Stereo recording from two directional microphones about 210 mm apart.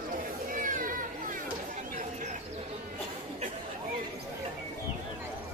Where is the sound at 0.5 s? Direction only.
40° right (ahead or behind).